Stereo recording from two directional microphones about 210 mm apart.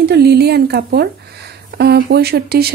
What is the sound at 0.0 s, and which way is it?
Speech, 50° right (ahead or behind).